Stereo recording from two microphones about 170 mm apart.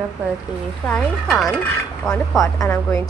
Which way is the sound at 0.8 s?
5° left (ahead or behind).